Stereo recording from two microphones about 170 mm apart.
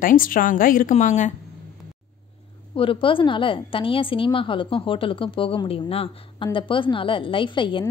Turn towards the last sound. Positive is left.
turn(degrees=30)  # may be behind; listen again after turning